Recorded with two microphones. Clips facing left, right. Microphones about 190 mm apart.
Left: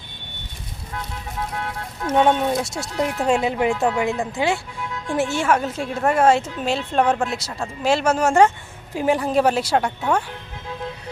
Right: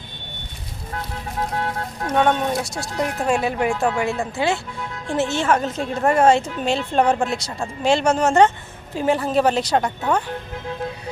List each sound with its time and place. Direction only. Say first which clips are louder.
2.0 s speech: left 2 dB; 25° left (ahead or behind); by 10.2 s 5° left (ahead or behind)